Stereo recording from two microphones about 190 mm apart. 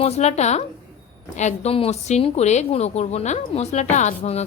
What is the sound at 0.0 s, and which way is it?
A woman's voice, 35° left (ahead or behind).